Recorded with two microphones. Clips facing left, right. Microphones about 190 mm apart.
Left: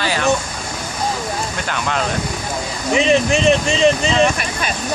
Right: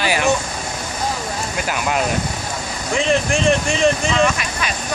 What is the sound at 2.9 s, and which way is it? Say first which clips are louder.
Speech: left 3 dB; 20° left (ahead or behind).